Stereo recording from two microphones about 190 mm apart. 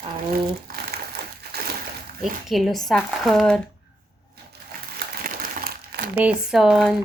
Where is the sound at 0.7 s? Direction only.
55° right (ahead or behind).